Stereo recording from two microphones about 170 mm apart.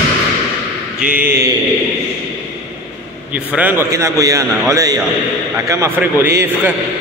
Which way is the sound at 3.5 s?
10° right (ahead or behind).